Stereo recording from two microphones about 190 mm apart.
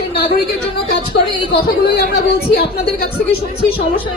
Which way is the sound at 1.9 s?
55° left (ahead or behind).